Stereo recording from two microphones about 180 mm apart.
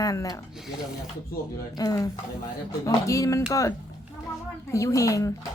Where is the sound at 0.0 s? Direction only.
20° left (ahead or behind).